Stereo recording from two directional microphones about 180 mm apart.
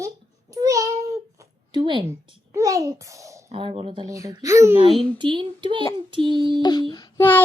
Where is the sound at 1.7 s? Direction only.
25° right (ahead or behind).